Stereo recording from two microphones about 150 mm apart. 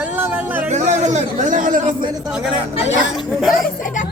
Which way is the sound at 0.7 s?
50° right (ahead or behind).